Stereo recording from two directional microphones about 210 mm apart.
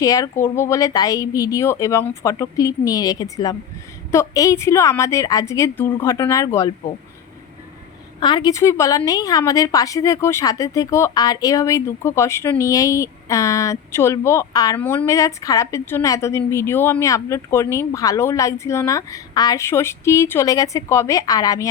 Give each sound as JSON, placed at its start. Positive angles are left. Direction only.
{"t": 0.0, "sound": "a woman's voice", "side_deg": 15}
{"t": 8.2, "sound": "a woman's voice", "side_deg": 20}